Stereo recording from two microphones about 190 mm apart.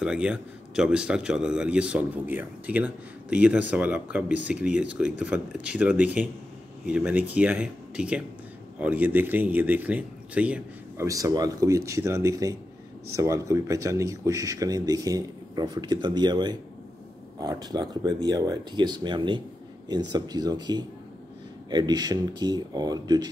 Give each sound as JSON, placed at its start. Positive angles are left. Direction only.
{"t": 0.0, "sound": "speech", "side_deg": -5}